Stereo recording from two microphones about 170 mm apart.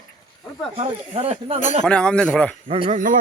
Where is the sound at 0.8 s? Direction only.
35° right (ahead or behind).